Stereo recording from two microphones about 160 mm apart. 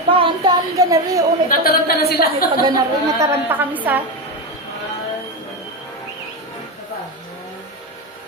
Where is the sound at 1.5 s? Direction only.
70° left (ahead or behind).